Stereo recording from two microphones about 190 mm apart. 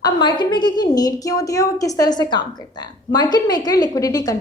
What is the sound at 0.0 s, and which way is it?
A woman's voice, 25° left (ahead or behind).